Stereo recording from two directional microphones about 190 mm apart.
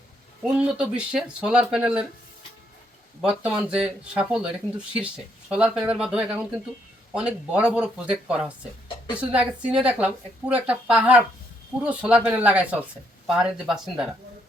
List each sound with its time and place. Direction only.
0.4 s speech: 5° right (ahead or behind)
3.2 s speech: 5° right (ahead or behind)
5.5 s speech: 5° right (ahead or behind)